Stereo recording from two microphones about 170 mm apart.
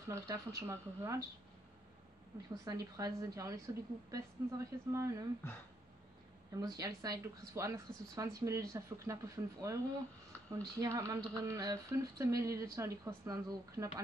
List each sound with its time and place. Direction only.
0.1 s speech: 15° right (ahead or behind)
2.5 s speech: 20° right (ahead or behind)
6.5 s speech: 20° right (ahead or behind)